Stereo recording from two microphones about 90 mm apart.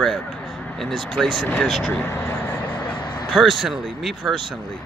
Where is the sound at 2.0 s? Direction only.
25° left (ahead or behind).